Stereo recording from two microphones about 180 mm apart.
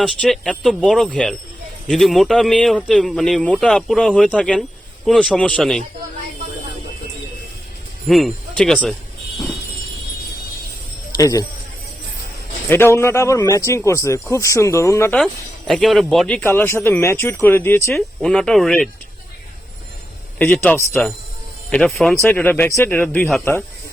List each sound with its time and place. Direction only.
0.0 s speech: 5° left (ahead or behind)
8.0 s speech: centre (ahead or behind)
11.2 s speech: 20° left (ahead or behind)
12.6 s speech: 15° left (ahead or behind)
20.4 s speech: 10° left (ahead or behind)